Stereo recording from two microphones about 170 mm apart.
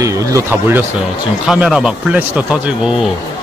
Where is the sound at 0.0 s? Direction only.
15° right (ahead or behind).